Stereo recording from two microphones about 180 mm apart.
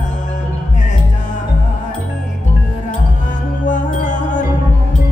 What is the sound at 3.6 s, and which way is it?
Music, 45° left (ahead or behind).